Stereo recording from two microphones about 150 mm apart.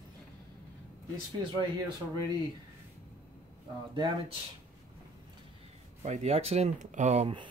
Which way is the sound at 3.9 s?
30° right (ahead or behind).